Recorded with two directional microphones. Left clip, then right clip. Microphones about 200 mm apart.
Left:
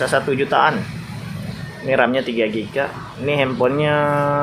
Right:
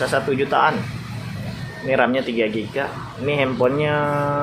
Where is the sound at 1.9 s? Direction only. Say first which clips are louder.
Left 2 dB; 5° left (ahead or behind).